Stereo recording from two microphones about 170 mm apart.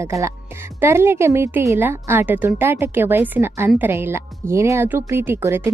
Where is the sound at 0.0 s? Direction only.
15° right (ahead or behind).